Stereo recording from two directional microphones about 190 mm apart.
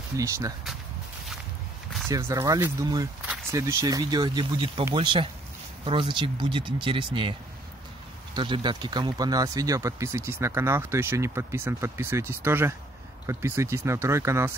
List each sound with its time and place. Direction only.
2.0 s speech: 15° right (ahead or behind)
8.4 s speech: 25° right (ahead or behind)